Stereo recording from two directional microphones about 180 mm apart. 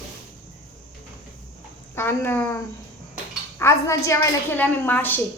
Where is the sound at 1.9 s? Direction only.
10° left (ahead or behind).